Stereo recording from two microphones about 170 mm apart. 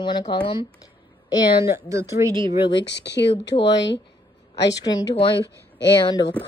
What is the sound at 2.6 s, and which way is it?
Speech, 30° left (ahead or behind).